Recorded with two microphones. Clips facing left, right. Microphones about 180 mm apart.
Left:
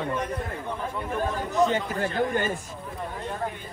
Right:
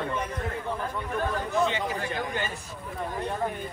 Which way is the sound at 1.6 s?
45° left (ahead or behind).